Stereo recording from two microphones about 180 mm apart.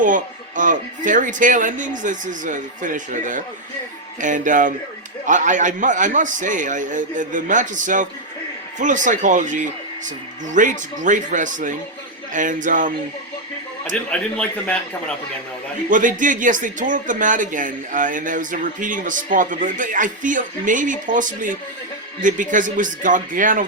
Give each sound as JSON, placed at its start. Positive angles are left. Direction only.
{"t": 0.0, "sound": "speech", "side_deg": -45}
{"t": 14.1, "sound": "speech", "side_deg": 5}
{"t": 15.9, "sound": "speech", "side_deg": -45}